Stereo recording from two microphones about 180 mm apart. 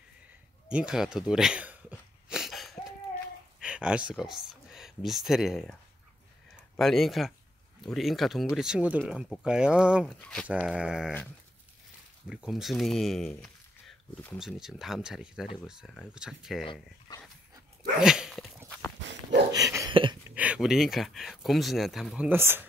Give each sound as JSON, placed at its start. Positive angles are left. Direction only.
{"t": 0.7, "sound": "a sound", "side_deg": -5}
{"t": 3.6, "sound": "speech", "side_deg": -5}
{"t": 6.8, "sound": "speech", "side_deg": 0}
{"t": 10.7, "sound": "speech", "side_deg": -5}
{"t": 12.3, "sound": "speech", "side_deg": -5}
{"t": 18.0, "sound": "dog", "side_deg": -5}
{"t": 18.9, "sound": "dog", "side_deg": -80}
{"t": 19.5, "sound": "a sound", "side_deg": -20}
{"t": 20.2, "sound": "speech", "side_deg": -5}